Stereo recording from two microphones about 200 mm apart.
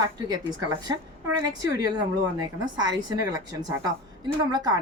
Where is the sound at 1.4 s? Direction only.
20° right (ahead or behind).